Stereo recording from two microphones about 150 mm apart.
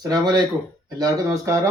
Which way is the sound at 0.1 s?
30° right (ahead or behind).